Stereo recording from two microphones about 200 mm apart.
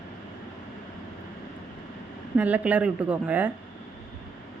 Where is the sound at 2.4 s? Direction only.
5° right (ahead or behind).